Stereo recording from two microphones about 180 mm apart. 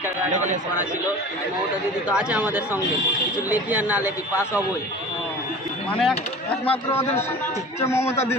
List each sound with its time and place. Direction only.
0.3 s speech: 45° right (ahead or behind)
2.0 s speech: 5° right (ahead or behind)
5.9 s speech: 5° left (ahead or behind)